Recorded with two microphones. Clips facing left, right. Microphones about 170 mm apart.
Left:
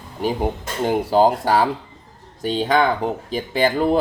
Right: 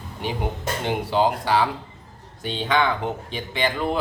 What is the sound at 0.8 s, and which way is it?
Speech, 40° left (ahead or behind).